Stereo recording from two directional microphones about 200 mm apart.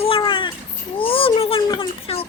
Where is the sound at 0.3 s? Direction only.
25° left (ahead or behind).